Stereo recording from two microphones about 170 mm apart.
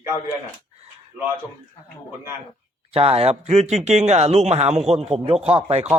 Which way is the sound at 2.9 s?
35° right (ahead or behind).